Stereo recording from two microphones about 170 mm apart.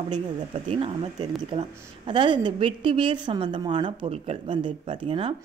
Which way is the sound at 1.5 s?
25° right (ahead or behind).